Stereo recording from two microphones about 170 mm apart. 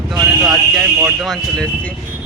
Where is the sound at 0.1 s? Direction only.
5° right (ahead or behind).